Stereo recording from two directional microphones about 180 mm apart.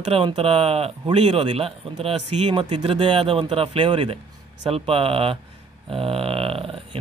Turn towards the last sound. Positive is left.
turn(degrees=-30)  # may be behind; listen again after turning